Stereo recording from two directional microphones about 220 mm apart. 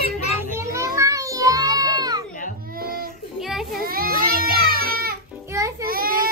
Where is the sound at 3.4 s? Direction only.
Centre (ahead or behind).